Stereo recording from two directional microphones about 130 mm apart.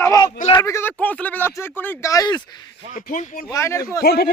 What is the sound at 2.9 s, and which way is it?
Speech, 75° left (ahead or behind).